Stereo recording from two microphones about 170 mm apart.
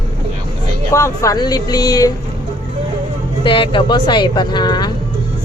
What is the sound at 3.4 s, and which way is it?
Speech, 30° left (ahead or behind).